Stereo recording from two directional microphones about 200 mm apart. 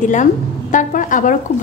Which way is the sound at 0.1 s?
40° left (ahead or behind).